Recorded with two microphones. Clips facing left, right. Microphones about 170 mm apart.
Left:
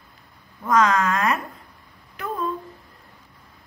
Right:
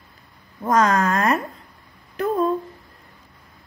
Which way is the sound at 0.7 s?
40° right (ahead or behind).